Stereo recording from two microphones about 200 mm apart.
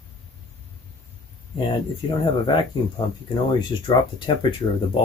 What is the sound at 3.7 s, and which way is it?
Speech, 25° left (ahead or behind).